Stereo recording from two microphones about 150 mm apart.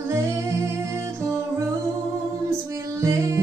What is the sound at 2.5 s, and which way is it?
Music, 20° right (ahead or behind).